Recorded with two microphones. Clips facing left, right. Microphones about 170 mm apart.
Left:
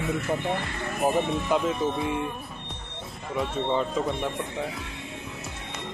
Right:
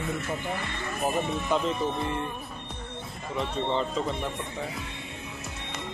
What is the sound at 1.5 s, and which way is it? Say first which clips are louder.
Speech: left 2 dB; 5° left (ahead or behind).